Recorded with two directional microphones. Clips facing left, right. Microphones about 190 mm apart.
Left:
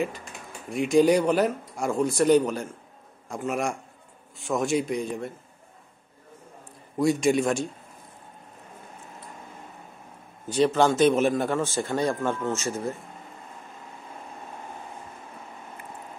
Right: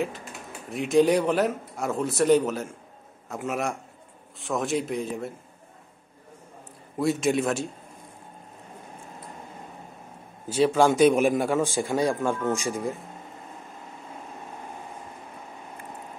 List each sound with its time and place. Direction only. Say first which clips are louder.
0.0 s speech: even; centre (ahead or behind)
7.0 s speech: left 2 dB; centre (ahead or behind)
10.5 s speech: right 1 dB; 5° right (ahead or behind)